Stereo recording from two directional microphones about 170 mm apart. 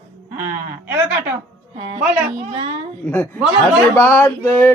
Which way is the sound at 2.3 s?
35° right (ahead or behind).